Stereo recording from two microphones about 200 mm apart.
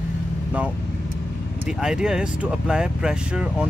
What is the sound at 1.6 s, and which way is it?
Speech, 5° right (ahead or behind).